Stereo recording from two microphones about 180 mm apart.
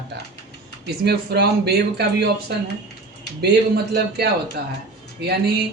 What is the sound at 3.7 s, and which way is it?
Speech, 60° right (ahead or behind).